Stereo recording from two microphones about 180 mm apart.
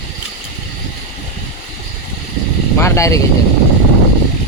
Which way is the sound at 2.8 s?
15° left (ahead or behind).